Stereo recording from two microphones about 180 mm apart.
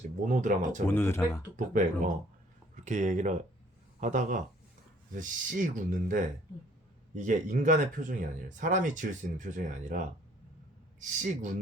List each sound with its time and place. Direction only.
0.3 s speech: 45° right (ahead or behind)
0.9 s speech: 10° left (ahead or behind)
1.5 s speech: 45° right (ahead or behind)
11.0 s speech: 45° right (ahead or behind)